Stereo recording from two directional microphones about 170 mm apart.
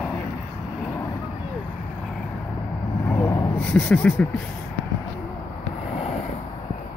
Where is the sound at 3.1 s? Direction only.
15° left (ahead or behind).